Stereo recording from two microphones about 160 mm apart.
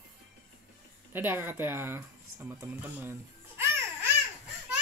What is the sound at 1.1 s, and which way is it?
Speech, 15° right (ahead or behind).